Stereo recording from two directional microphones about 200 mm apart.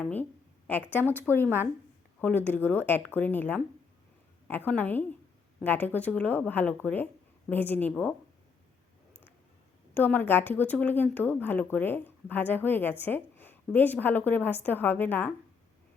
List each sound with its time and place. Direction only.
0.0 s speech: 10° left (ahead or behind)
9.9 s speech: 10° left (ahead or behind)